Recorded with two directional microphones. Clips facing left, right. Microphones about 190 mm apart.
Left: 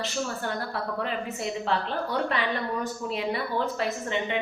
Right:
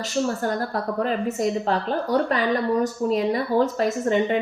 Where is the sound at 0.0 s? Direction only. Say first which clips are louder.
Right 7 dB; 40° right (ahead or behind).